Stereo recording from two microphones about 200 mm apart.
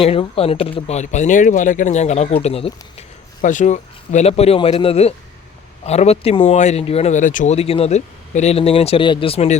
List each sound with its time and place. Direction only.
0.0 s speech: 30° left (ahead or behind)